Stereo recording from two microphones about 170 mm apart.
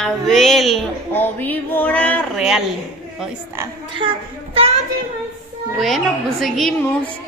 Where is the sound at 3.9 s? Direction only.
30° right (ahead or behind).